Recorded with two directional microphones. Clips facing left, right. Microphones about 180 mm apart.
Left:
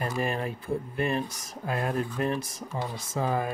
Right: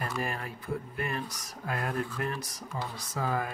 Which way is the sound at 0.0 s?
25° left (ahead or behind).